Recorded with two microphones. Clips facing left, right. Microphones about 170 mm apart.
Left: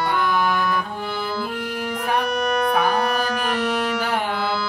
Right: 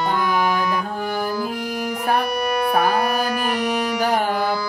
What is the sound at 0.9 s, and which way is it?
Music, 40° right (ahead or behind).